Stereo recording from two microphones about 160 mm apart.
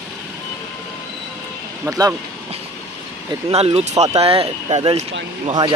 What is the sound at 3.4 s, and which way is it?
A man's voice, 40° right (ahead or behind).